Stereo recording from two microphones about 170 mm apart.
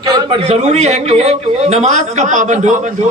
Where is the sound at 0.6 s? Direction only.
40° right (ahead or behind).